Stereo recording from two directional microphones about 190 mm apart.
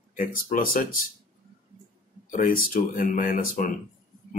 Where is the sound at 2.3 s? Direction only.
45° left (ahead or behind).